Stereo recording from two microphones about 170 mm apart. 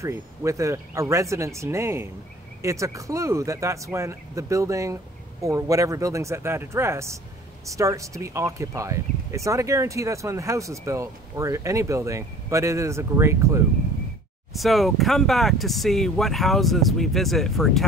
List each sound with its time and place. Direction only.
0.0 s speech: 15° right (ahead or behind)
14.5 s speech: centre (ahead or behind)